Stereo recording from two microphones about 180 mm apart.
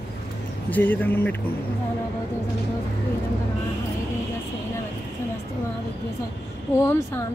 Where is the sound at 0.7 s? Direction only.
10° left (ahead or behind).